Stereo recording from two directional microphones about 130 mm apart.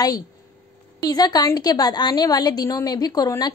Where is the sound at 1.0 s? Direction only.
30° left (ahead or behind).